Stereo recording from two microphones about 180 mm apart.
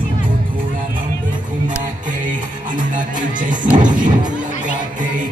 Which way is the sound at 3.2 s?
45° right (ahead or behind).